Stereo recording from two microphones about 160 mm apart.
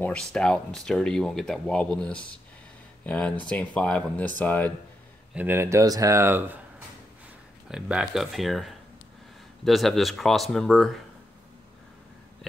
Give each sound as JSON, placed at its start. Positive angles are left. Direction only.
{"t": 0.0, "sound": "speech", "side_deg": 5}
{"t": 5.3, "sound": "speech", "side_deg": -10}
{"t": 7.7, "sound": "speech", "side_deg": -5}